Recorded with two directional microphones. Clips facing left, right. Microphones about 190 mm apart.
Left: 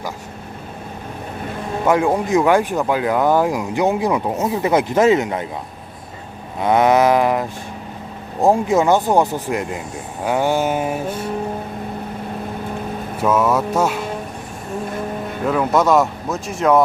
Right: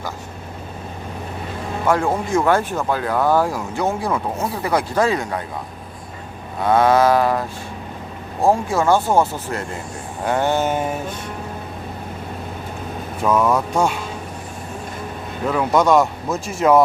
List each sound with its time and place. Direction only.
1.9 s speech: 15° left (ahead or behind)
6.6 s a sound: 20° left (ahead or behind)
8.4 s speech: 20° left (ahead or behind)
13.2 s speech: 5° left (ahead or behind)
15.4 s speech: centre (ahead or behind)